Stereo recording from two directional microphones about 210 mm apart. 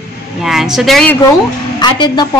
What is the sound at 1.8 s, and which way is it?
Speech, 20° left (ahead or behind).